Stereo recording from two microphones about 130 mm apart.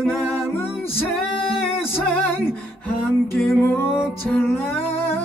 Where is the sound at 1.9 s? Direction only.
15° left (ahead or behind).